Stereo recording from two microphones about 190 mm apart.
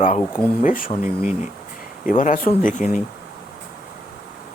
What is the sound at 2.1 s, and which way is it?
Speech, 45° left (ahead or behind).